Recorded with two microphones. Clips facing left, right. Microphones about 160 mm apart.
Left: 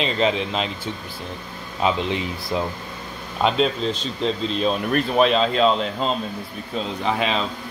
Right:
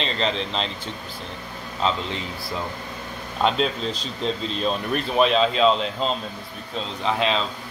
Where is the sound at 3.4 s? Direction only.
Centre (ahead or behind).